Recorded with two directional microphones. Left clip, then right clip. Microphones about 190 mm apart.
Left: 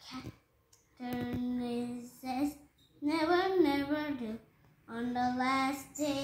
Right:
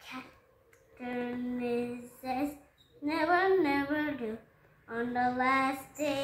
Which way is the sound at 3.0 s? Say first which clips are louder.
Right 2 dB; 15° right (ahead or behind).